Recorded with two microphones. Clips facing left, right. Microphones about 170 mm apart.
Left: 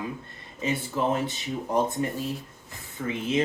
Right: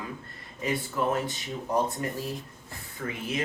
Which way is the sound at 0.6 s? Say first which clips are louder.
Left 2 dB; 25° left (ahead or behind).